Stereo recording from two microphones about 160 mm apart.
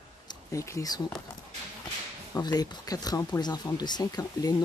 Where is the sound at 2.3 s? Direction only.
25° left (ahead or behind).